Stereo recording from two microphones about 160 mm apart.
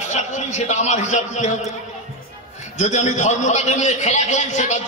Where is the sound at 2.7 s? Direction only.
45° left (ahead or behind).